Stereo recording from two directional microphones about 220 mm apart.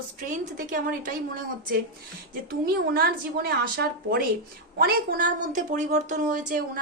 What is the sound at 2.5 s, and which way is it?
A woman's voice, 45° right (ahead or behind).